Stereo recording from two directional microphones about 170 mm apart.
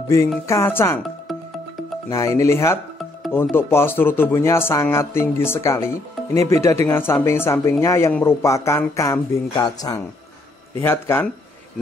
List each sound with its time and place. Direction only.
0.5 s speech: 15° left (ahead or behind)
2.0 s speech: 20° left (ahead or behind)